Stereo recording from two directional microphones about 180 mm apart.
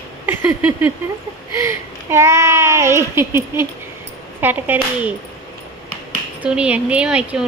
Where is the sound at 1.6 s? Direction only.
15° right (ahead or behind).